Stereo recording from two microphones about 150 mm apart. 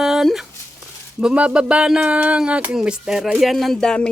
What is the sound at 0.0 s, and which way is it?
Dog, 5° right (ahead or behind).